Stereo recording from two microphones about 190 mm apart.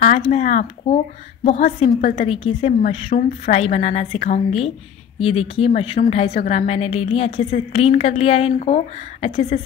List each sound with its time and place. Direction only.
0.0 s a woman's voice: 40° left (ahead or behind)